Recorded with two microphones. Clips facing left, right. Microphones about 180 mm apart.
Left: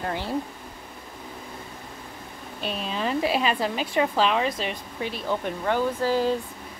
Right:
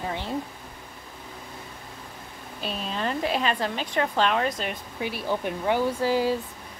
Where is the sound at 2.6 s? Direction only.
Centre (ahead or behind).